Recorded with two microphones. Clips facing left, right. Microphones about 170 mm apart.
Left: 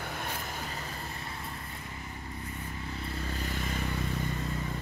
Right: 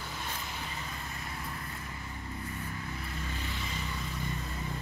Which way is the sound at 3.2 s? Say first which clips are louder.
Left 5 dB; 40° left (ahead or behind).